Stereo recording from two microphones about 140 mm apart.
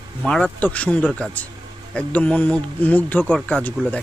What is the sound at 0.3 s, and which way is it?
Speech, 5° left (ahead or behind).